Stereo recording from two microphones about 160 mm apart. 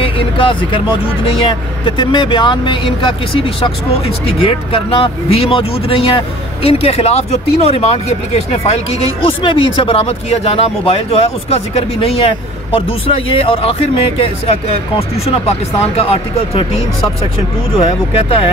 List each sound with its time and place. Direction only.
0.0 s speech: 35° left (ahead or behind)
16.0 s speech: 35° left (ahead or behind)
17.7 s speech: 40° left (ahead or behind)